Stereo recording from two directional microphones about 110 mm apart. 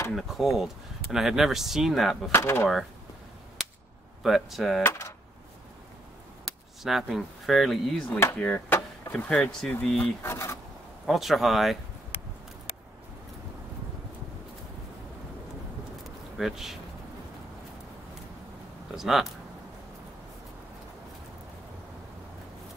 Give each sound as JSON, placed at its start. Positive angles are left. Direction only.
{"t": 0.1, "sound": "speech", "side_deg": 0}
{"t": 2.3, "sound": "speech", "side_deg": 20}
{"t": 3.6, "sound": "whip", "side_deg": 0}
{"t": 4.2, "sound": "speech", "side_deg": 0}
{"t": 4.8, "sound": "speech", "side_deg": 25}
{"t": 6.4, "sound": "speech", "side_deg": 0}
{"t": 8.1, "sound": "speech", "side_deg": 25}
{"t": 8.4, "sound": "chop", "side_deg": 15}
{"t": 9.1, "sound": "speech", "side_deg": 10}
{"t": 10.3, "sound": "speech", "side_deg": 25}
{"t": 11.1, "sound": "speech", "side_deg": 0}
{"t": 16.3, "sound": "speech", "side_deg": -5}
{"t": 18.9, "sound": "speech", "side_deg": 0}